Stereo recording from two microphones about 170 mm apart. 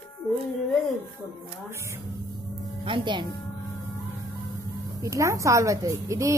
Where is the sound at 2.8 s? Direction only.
30° right (ahead or behind).